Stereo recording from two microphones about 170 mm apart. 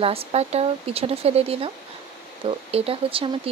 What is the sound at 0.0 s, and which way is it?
Speech, 35° right (ahead or behind).